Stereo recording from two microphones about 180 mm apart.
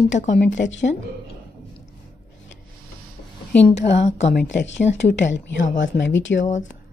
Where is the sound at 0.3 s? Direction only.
80° left.